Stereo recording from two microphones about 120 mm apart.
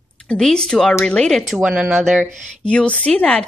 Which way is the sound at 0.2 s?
5° left (ahead or behind).